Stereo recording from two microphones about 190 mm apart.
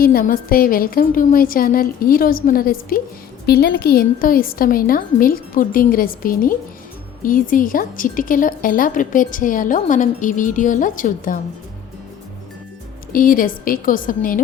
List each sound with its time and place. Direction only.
0.0 s a woman's voice: 50° left (ahead or behind)
13.1 s a woman's voice: 45° left (ahead or behind)